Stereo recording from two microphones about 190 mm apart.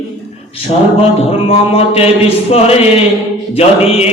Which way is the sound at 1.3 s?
30° left (ahead or behind).